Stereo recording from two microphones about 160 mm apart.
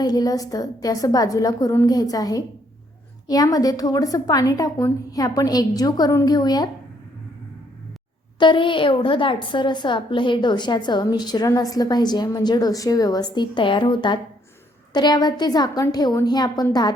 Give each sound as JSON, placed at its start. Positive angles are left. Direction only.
{"t": 0.0, "sound": "a woman's voice", "side_deg": 25}
{"t": 8.4, "sound": "a woman's voice", "side_deg": 30}